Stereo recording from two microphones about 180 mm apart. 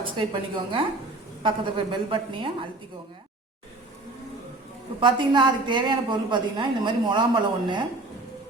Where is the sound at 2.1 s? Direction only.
25° right (ahead or behind).